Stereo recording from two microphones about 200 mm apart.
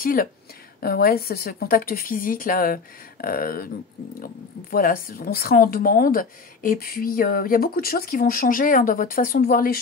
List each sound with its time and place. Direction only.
0.0 s speech: 45° left (ahead or behind)